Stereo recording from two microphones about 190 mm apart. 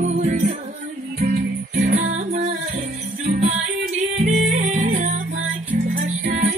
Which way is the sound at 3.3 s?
35° right (ahead or behind).